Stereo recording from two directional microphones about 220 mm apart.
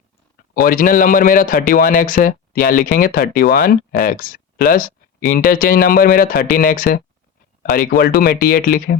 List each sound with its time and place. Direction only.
0.5 s a man's voice: 40° left (ahead or behind)